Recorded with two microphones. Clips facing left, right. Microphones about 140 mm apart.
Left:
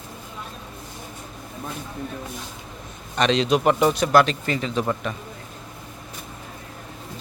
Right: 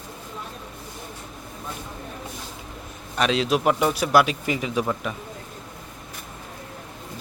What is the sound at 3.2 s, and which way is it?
A man's voice, 5° right (ahead or behind).